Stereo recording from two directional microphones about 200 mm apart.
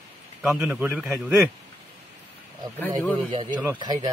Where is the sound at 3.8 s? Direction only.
20° right (ahead or behind).